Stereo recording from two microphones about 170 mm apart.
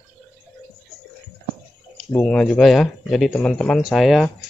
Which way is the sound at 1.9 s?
5° left (ahead or behind).